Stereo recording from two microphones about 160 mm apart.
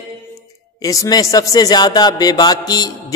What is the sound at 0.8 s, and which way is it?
A man's voice, 20° left (ahead or behind).